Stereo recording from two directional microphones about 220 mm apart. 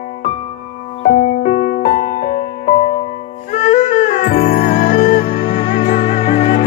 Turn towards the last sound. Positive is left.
turn(degrees=30)  # may be behind; listen again after turning